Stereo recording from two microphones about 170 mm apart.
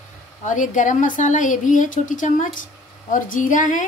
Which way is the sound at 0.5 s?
50° left (ahead or behind).